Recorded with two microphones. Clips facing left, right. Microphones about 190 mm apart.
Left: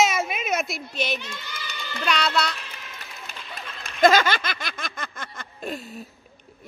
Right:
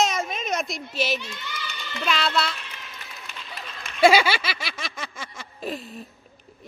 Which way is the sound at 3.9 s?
10° right (ahead or behind).